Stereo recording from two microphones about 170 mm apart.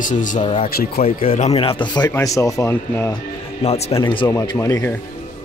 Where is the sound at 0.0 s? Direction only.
50° left (ahead or behind).